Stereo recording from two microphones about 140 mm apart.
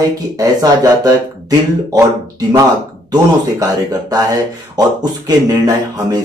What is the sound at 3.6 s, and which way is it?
Speech, 25° right (ahead or behind).